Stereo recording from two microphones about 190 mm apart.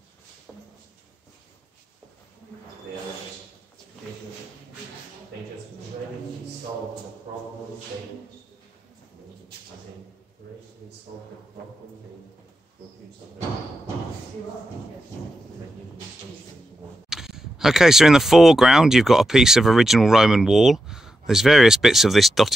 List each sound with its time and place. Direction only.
17.1 s speech: centre (ahead or behind)